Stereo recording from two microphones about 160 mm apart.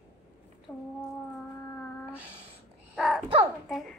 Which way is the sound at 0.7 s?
10° left (ahead or behind).